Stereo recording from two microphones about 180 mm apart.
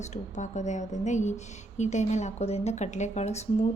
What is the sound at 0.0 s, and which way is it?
A woman's voice, 40° left (ahead or behind).